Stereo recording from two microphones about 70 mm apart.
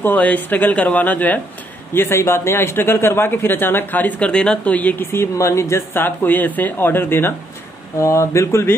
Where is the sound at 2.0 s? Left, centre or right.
Left.